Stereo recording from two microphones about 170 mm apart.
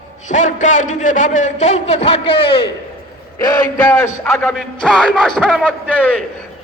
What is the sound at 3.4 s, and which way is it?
Speech, 20° left (ahead or behind).